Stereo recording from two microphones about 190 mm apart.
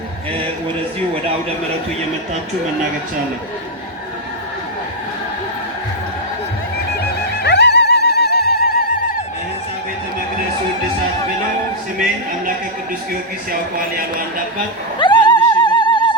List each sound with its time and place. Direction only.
7.4 s music: 60° left (ahead or behind)
13.5 s speech: 50° right (ahead or behind)
14.9 s opera: 25° left (ahead or behind)